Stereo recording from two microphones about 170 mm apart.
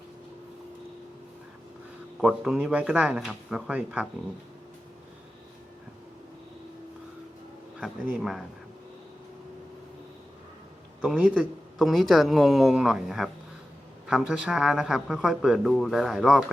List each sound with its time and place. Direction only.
2.2 s speech: 5° right (ahead or behind)
7.8 s speech: 5° right (ahead or behind)
11.0 s speech: 5° right (ahead or behind)